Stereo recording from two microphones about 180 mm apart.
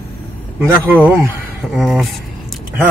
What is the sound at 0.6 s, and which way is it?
Speech, 10° right (ahead or behind).